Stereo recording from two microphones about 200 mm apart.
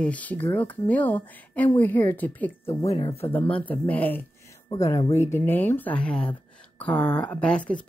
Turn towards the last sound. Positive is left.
turn(degrees=5)  # may be behind; listen again after turning